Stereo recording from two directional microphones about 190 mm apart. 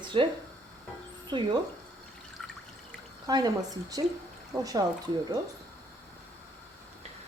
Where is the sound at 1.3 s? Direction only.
25° right (ahead or behind).